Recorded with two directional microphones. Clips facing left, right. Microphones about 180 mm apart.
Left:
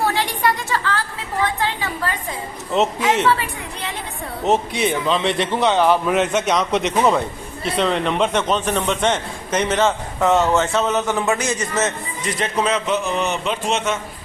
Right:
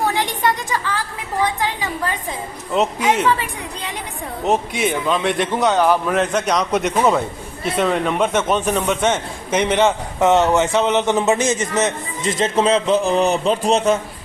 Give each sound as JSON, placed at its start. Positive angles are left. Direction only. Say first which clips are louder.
{"t": 0.0, "sound": "a sound", "louder": "even", "side_deg": -15}
{"t": 3.2, "sound": "a woman's voice", "louder": "even", "side_deg": -15}
{"t": 4.4, "sound": "a man's voice", "louder": "even", "side_deg": 0}